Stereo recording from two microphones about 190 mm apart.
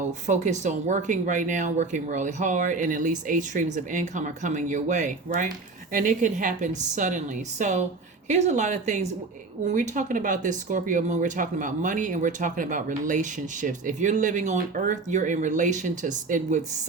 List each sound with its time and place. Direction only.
0.0 s speech: 40° right (ahead or behind)